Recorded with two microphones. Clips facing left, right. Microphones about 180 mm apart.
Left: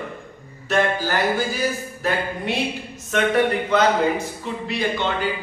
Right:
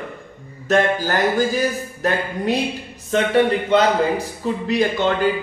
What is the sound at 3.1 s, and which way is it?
A man's voice, 30° right (ahead or behind).